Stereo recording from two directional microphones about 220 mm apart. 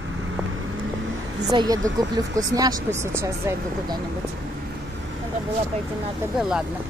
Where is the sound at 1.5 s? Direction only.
15° right (ahead or behind).